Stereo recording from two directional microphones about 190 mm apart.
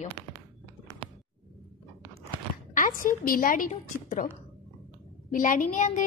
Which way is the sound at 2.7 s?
45° left (ahead or behind).